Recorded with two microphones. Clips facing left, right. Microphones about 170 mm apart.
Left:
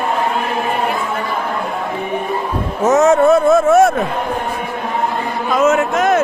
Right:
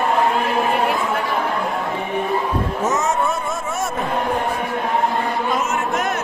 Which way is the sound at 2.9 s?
70° left (ahead or behind).